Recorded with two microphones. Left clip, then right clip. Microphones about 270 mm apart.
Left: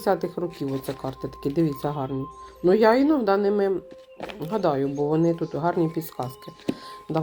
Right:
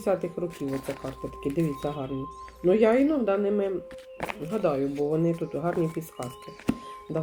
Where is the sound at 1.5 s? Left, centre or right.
Left.